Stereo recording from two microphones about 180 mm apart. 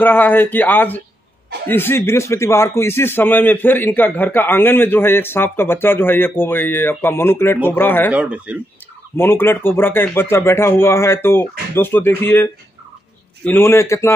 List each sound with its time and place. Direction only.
0.0 s a man's voice: 10° left (ahead or behind)
8.1 s speech: 5° right (ahead or behind)
9.1 s a man's voice: 10° left (ahead or behind)
13.5 s a man's voice: 15° left (ahead or behind)